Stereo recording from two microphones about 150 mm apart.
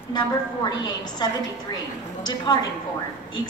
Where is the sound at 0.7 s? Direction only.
25° left (ahead or behind).